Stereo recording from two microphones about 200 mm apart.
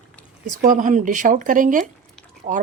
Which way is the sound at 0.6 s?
40° right (ahead or behind).